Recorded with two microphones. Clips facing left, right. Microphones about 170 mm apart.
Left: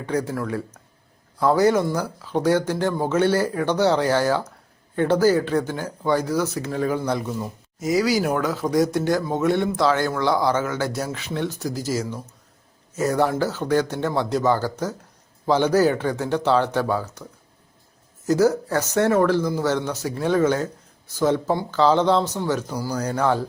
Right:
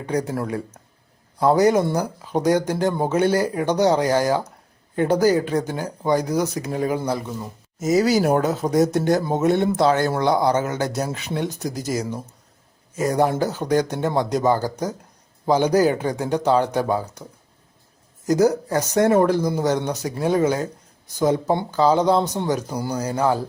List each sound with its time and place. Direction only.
0.0 s speech: 15° right (ahead or behind)
7.1 s a man's voice: 5° right (ahead or behind)
7.9 s speech: 45° right (ahead or behind)
8.2 s speech: 30° right (ahead or behind)
18.3 s speech: 15° right (ahead or behind)
22.6 s speech: 25° right (ahead or behind)
23.0 s speech: 10° right (ahead or behind)